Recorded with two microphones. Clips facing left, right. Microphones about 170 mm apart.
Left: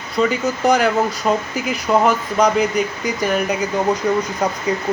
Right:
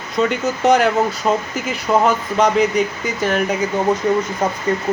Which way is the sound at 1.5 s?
Centre (ahead or behind).